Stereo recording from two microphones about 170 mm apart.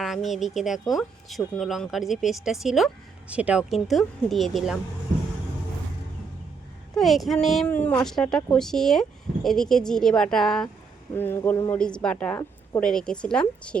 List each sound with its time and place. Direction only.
0.0 s speech: centre (ahead or behind)
6.9 s speech: centre (ahead or behind)
11.5 s speech: 25° left (ahead or behind)
11.8 s speech: 5° left (ahead or behind)